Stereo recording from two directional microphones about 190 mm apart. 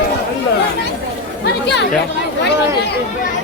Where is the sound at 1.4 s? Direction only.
65° left (ahead or behind).